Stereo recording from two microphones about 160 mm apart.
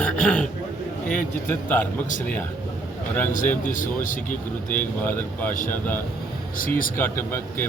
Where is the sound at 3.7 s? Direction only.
55° left (ahead or behind).